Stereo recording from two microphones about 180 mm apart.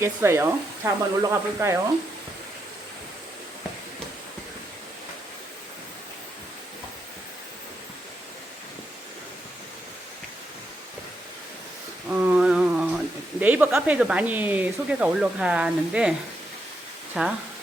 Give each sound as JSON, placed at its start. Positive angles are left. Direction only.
{"t": 0.0, "sound": "speech", "side_deg": -15}
{"t": 12.1, "sound": "mantra", "side_deg": -10}
{"t": 13.4, "sound": "speech", "side_deg": -10}
{"t": 17.2, "sound": "speech", "side_deg": -5}